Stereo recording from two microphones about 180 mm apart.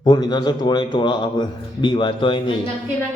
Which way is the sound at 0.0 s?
25° left (ahead or behind).